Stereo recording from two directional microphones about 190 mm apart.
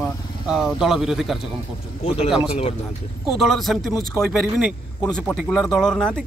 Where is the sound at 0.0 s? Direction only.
Centre (ahead or behind).